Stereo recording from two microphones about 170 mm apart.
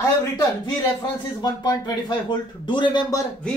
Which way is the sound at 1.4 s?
25° left (ahead or behind).